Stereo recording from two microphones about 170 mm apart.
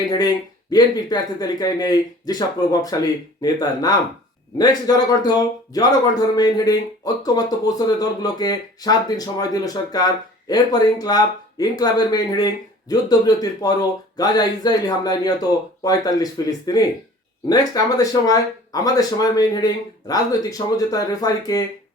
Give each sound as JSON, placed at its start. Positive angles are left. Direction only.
{"t": 0.1, "sound": "a man's voice", "side_deg": 25}